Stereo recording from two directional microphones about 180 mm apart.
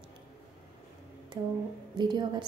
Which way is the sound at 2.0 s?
25° right (ahead or behind).